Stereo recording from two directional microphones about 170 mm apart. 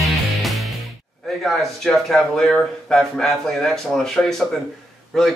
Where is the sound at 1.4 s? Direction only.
Centre (ahead or behind).